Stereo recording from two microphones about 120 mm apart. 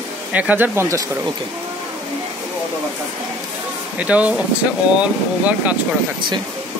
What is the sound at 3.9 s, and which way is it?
Speech, 10° right (ahead or behind).